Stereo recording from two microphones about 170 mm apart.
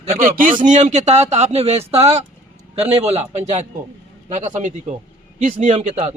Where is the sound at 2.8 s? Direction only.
35° right (ahead or behind).